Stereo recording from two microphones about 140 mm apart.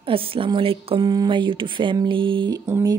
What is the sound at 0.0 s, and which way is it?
Speech, 40° right (ahead or behind).